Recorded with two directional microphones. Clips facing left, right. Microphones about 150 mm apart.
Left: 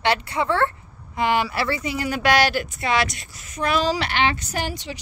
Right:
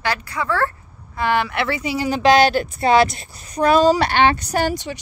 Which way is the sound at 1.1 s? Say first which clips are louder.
Right 1 dB; 15° left (ahead or behind).